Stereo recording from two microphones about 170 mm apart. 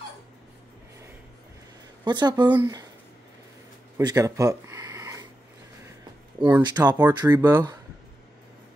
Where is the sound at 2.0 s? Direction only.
25° right (ahead or behind).